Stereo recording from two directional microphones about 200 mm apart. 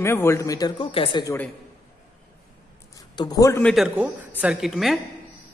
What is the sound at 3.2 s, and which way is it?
Speech, 20° left (ahead or behind).